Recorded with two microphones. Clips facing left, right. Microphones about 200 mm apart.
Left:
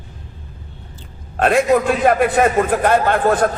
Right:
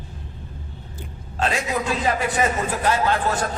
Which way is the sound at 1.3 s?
55° left (ahead or behind).